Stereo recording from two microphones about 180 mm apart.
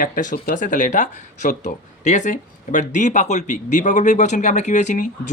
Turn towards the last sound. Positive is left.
turn(degrees=45)  # may be behind; listen again after turning